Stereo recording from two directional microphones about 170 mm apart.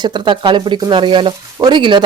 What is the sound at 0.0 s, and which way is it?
Speech, 25° right (ahead or behind).